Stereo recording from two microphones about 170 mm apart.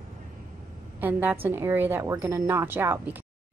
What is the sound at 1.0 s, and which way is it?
Speech, 10° right (ahead or behind).